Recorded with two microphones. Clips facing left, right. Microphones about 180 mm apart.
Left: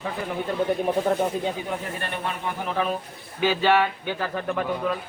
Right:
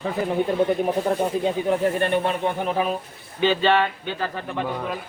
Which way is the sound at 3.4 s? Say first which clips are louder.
Right 1 dB; 10° left (ahead or behind).